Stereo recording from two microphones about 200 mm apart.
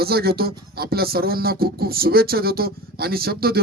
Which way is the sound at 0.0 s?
50° right (ahead or behind).